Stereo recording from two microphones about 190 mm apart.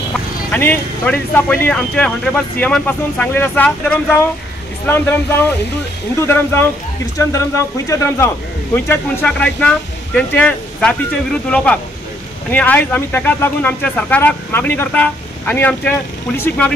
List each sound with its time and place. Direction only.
0.5 s speech: 10° left (ahead or behind)